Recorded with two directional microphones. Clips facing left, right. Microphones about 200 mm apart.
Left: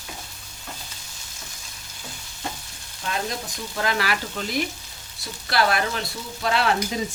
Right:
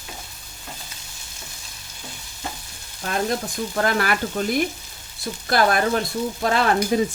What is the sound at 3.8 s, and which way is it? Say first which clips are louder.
Frying: right 3 dB; 50° right (ahead or behind).